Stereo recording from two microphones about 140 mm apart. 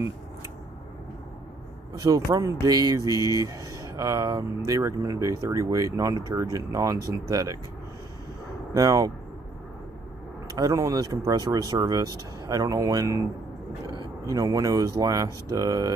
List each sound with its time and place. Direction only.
2.0 s speech: 25° right (ahead or behind)
8.7 s speech: 25° right (ahead or behind)
10.5 s speech: 25° right (ahead or behind)